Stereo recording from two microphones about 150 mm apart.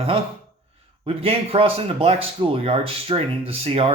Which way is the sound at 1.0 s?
40° right (ahead or behind).